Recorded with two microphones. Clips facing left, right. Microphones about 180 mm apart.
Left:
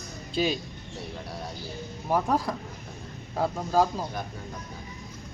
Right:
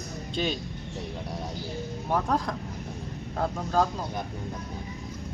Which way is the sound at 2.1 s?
10° left (ahead or behind).